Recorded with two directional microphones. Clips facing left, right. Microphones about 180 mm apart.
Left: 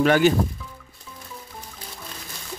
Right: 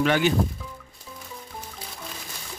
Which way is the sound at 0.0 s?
45° left (ahead or behind).